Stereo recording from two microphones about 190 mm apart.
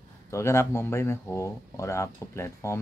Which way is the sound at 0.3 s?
15° left (ahead or behind).